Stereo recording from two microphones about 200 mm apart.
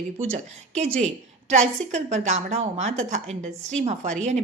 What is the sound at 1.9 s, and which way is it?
A woman's voice, 35° right (ahead or behind).